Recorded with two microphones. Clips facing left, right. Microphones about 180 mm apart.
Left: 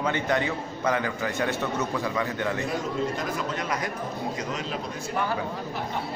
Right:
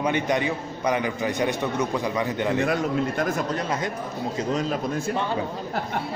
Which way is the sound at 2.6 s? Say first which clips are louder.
Right 5 dB; 65° right (ahead or behind).